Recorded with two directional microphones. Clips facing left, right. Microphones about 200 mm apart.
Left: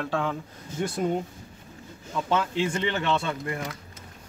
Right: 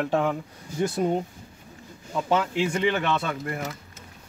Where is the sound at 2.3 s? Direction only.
15° right (ahead or behind).